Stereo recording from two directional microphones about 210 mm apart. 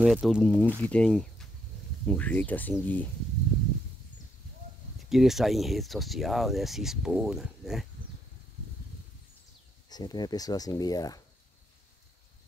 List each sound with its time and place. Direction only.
0.0 s speech: centre (ahead or behind)
4.9 s speech: centre (ahead or behind)
9.8 s speech: 20° left (ahead or behind)